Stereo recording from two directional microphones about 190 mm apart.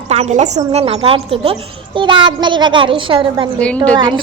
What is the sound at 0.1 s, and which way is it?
A child's voice, 35° right (ahead or behind).